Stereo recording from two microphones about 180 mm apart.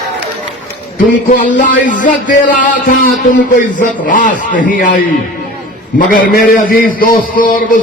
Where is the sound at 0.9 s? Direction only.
45° left (ahead or behind).